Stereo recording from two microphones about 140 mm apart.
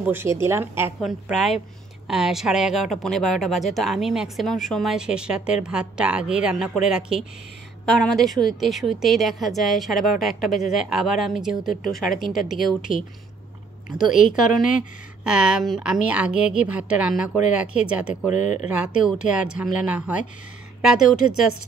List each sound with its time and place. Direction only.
0.0 s speech: 15° right (ahead or behind)
1.0 s speech: centre (ahead or behind)
14.1 s speech: 75° left (ahead or behind)
15.2 s speech: 5° right (ahead or behind)
18.3 s speech: 60° left (ahead or behind)
18.7 s speech: 10° right (ahead or behind)